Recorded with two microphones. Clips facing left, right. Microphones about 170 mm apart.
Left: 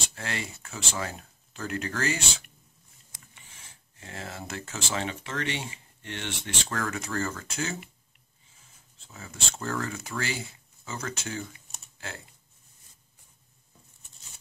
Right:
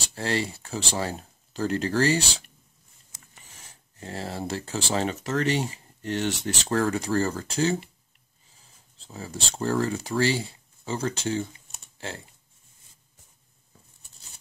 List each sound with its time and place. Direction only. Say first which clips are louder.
0.1 s speech: right 11 dB; 35° right (ahead or behind)
8.9 s speech: right 8 dB; 35° right (ahead or behind)